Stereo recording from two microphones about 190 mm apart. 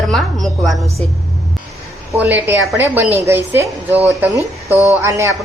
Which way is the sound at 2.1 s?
10° right (ahead or behind).